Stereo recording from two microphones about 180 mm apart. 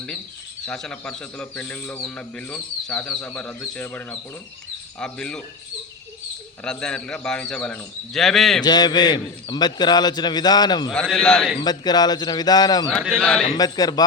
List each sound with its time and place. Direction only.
0.7 s a man's voice: 5° left (ahead or behind)
6.7 s a man's voice: 5° left (ahead or behind)
8.6 s a man's voice: 25° left (ahead or behind)
10.9 s a man's voice: 5° left (ahead or behind)
11.5 s a man's voice: 25° left (ahead or behind)
12.9 s a man's voice: centre (ahead or behind)
13.6 s a man's voice: 20° left (ahead or behind)